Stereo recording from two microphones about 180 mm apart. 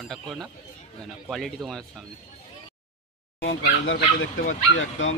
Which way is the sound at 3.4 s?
85° left.